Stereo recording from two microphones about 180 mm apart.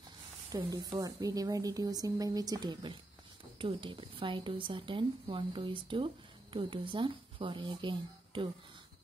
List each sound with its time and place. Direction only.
0.5 s speech: 25° right (ahead or behind)